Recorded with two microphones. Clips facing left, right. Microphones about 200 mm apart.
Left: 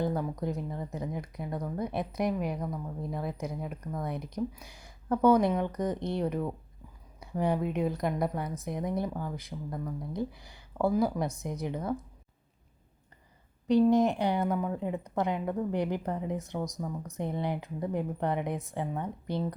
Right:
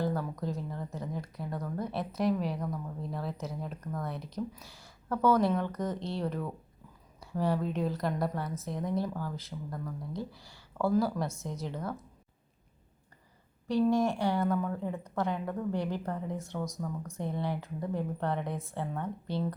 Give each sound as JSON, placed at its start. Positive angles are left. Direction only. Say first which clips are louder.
{"t": 0.0, "sound": "speech", "louder": "left 2 dB", "side_deg": 20}
{"t": 13.7, "sound": "speech", "louder": "left 4 dB", "side_deg": 20}